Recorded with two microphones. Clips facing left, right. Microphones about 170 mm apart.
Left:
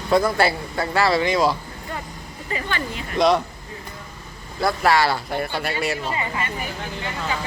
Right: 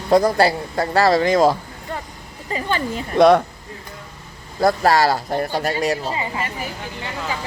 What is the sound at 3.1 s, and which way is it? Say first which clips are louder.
Speech: right 6 dB; 55° right (ahead or behind).